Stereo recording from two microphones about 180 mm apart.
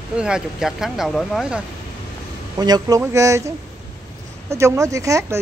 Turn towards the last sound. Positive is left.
turn(degrees=-15)  # may be behind; listen again after turning